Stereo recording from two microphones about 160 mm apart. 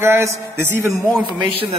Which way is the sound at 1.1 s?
Centre (ahead or behind).